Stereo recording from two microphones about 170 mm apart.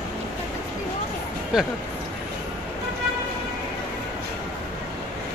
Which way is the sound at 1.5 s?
5° right (ahead or behind).